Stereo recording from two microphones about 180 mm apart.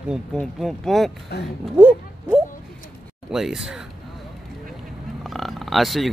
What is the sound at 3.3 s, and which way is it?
Speech, centre (ahead or behind).